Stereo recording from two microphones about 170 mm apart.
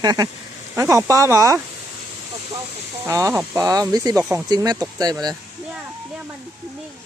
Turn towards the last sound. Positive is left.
turn(degrees=-25)  # may be behind; listen again after turning